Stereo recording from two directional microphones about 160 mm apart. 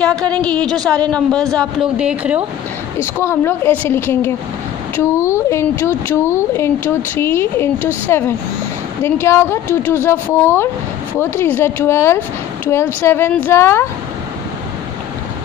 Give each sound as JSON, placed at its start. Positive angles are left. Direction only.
{"t": 0.0, "sound": "speech", "side_deg": 5}
{"t": 2.0, "sound": "speech", "side_deg": -5}
{"t": 3.0, "sound": "speech", "side_deg": 15}